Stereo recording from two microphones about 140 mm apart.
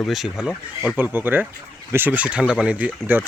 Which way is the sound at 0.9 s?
15° right (ahead or behind).